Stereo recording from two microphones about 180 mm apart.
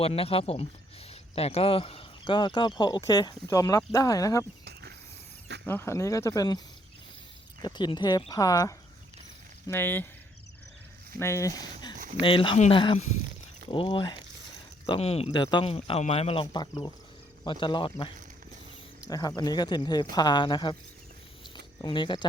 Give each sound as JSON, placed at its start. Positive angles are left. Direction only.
{"t": 0.0, "sound": "speech", "side_deg": 35}
{"t": 4.6, "sound": "a sound", "side_deg": -65}
{"t": 5.6, "sound": "speech", "side_deg": 15}
{"t": 7.6, "sound": "speech", "side_deg": 25}
{"t": 11.2, "sound": "speech", "side_deg": 15}
{"t": 21.8, "sound": "speech", "side_deg": 25}